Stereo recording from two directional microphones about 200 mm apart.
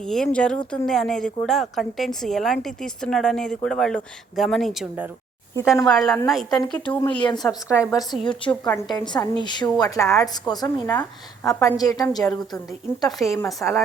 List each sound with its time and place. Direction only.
0.0 s a woman's voice: 5° left (ahead or behind)
7.2 s a woman's voice: 20° left (ahead or behind)
13.0 s a woman's voice: centre (ahead or behind)